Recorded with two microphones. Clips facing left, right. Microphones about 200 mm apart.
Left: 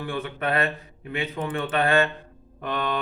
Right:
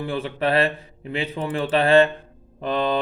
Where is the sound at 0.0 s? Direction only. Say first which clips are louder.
Right 4 dB; 30° right (ahead or behind).